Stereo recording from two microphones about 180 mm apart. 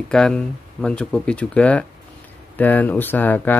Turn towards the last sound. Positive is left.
turn(degrees=10)  # may be behind; listen again after turning